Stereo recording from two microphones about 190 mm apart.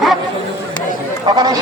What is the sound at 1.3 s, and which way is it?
Speech, 20° right (ahead or behind).